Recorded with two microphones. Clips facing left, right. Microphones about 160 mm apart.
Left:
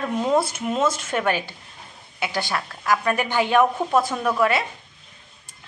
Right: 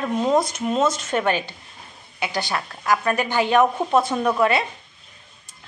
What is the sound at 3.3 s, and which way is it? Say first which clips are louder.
Speech: right 1 dB; 15° left (ahead or behind).